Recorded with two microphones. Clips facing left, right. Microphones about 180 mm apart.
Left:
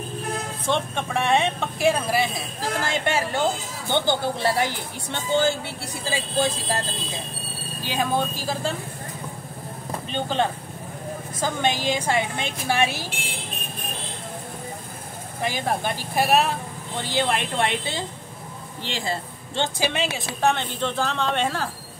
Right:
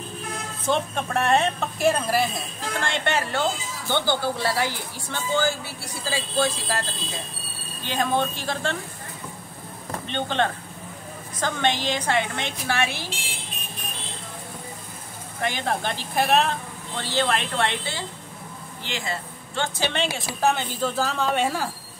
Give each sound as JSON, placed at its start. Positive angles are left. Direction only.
{"t": 0.7, "sound": "a woman's voice", "side_deg": 0}
{"t": 7.9, "sound": "a woman's voice", "side_deg": 10}
{"t": 10.0, "sound": "a woman's voice", "side_deg": 5}
{"t": 12.9, "sound": "speech", "side_deg": 45}
{"t": 15.4, "sound": "a woman's voice", "side_deg": 10}
{"t": 18.8, "sound": "speech", "side_deg": 30}
{"t": 19.8, "sound": "a woman's voice", "side_deg": 5}